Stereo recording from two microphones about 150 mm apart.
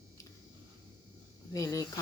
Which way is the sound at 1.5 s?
20° left (ahead or behind).